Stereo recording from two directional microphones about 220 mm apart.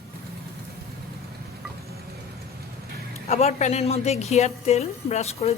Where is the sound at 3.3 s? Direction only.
30° left (ahead or behind).